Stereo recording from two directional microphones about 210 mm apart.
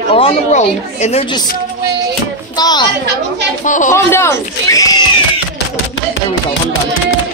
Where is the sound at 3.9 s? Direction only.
10° left (ahead or behind).